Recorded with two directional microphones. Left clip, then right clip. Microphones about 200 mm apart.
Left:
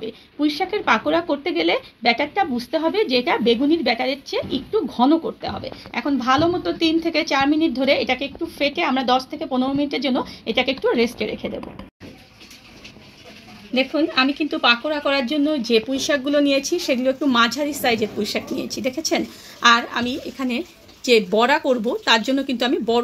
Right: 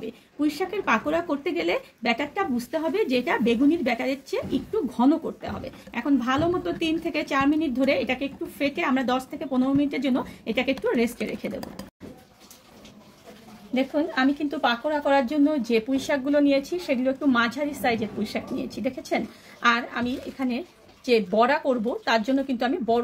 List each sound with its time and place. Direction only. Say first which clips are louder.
0.0 s speech: left 4 dB; 15° left (ahead or behind)
13.7 s a woman's voice: left 6 dB; 30° left (ahead or behind)